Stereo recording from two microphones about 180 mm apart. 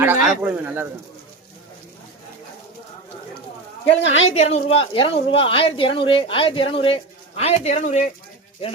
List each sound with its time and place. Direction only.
0.3 s speech: 10° right (ahead or behind)
3.8 s a woman's voice: 85° left
4.3 s a woman's voice: 35° left (ahead or behind)